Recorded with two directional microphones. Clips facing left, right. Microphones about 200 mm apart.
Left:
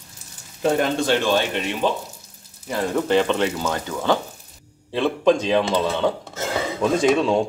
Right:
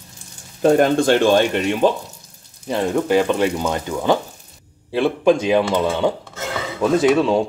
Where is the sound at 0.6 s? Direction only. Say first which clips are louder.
Right 6 dB; 45° right (ahead or behind).